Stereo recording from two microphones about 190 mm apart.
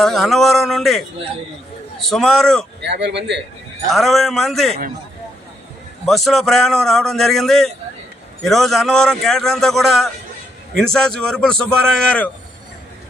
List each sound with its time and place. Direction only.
0.0 s a man's voice: centre (ahead or behind)
2.8 s a man's voice: 60° right (ahead or behind)
3.8 s a man's voice: centre (ahead or behind)
6.1 s a man's voice: centre (ahead or behind)